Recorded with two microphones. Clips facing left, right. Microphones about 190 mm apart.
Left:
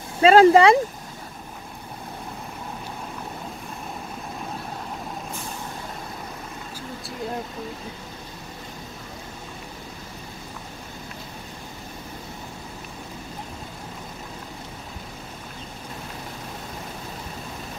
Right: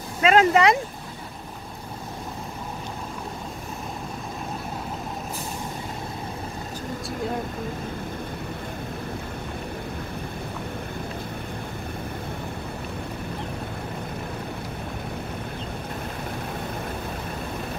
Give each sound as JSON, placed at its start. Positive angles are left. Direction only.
{"t": 0.2, "sound": "speech", "side_deg": 35}